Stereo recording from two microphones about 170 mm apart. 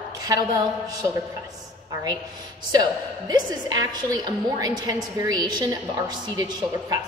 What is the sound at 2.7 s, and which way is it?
A woman's voice, 25° right (ahead or behind).